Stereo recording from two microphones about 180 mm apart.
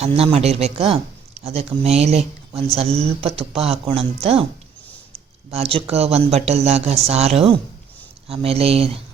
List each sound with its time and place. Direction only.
0.0 s speech: 35° right (ahead or behind)
5.5 s speech: 35° right (ahead or behind)